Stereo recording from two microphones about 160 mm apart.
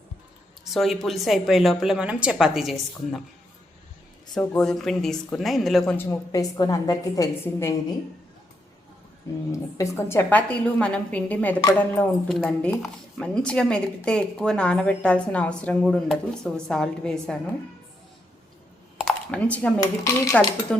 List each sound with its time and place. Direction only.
0.6 s a sound: centre (ahead or behind)
1.0 s speech: centre (ahead or behind)
4.4 s speech: 5° left (ahead or behind)
6.1 s a woman's voice: 20° left (ahead or behind)
9.5 s a woman's voice: 20° left (ahead or behind)
19.0 s speech: 10° left (ahead or behind)